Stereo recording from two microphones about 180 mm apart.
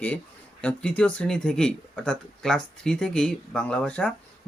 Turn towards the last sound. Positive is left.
turn(degrees=5)  # may be behind; listen again after turning